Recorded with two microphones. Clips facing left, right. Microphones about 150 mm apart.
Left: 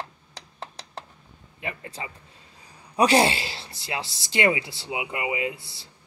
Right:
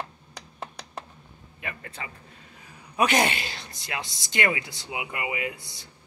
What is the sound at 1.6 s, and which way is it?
A woman's voice, 25° left (ahead or behind).